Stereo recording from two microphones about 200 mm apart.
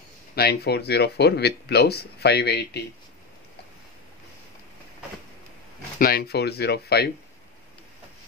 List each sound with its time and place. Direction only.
0.4 s speech: 55° left (ahead or behind)
5.9 s speech: 50° left (ahead or behind)